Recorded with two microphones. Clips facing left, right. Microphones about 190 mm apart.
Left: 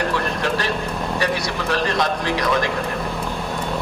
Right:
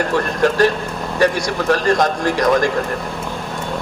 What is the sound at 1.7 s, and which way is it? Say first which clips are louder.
Speech: right 5 dB; 45° right (ahead or behind).